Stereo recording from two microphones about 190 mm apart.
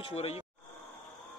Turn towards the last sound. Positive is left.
turn(degrees=30)  # may be behind; listen again after turning